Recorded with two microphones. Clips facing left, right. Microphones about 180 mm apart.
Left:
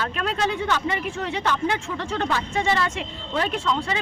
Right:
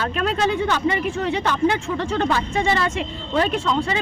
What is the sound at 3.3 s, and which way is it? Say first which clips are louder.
Speech: right 4 dB; 35° right (ahead or behind).